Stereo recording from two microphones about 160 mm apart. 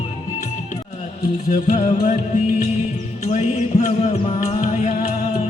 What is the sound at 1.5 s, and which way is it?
Music, 60° left (ahead or behind).